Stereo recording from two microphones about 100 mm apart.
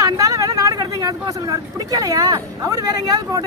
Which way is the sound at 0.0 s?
35° right (ahead or behind).